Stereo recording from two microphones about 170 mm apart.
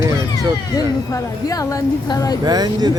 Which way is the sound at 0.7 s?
20° left (ahead or behind).